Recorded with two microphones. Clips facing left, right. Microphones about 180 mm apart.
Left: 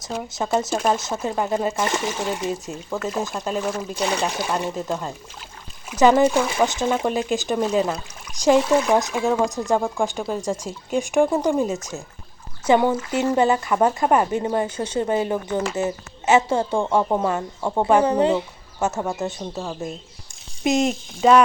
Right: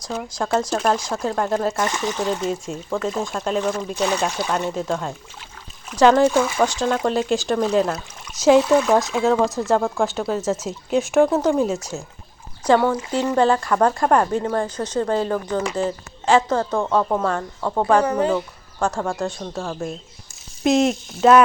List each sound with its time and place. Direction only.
0.0 s speech: 5° left (ahead or behind)
8.7 s speech: 15° left (ahead or behind)
9.4 s speech: centre (ahead or behind)
12.7 s speech: 20° left (ahead or behind)
13.3 s speech: 10° left (ahead or behind)
18.0 s speech: 25° left (ahead or behind)
18.9 s speech: 5° left (ahead or behind)